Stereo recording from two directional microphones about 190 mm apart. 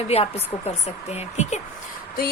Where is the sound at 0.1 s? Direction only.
35° left (ahead or behind).